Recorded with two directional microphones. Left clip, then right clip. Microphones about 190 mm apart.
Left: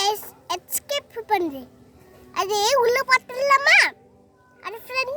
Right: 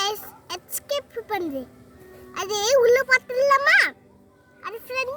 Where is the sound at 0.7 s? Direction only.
65° left (ahead or behind).